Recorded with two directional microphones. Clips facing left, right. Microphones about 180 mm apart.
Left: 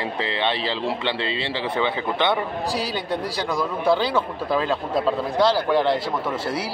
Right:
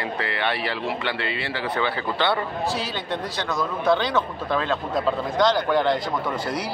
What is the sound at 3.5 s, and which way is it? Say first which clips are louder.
A man's voice: left 1 dB; 10° left (ahead or behind).